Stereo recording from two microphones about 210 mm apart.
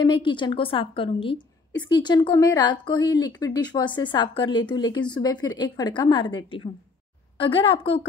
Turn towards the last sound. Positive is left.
turn(degrees=25)  # may be behind; listen again after turning